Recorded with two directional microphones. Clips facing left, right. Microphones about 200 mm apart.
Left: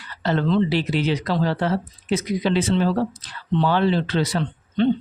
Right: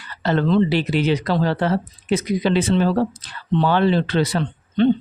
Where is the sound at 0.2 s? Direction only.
60° right (ahead or behind).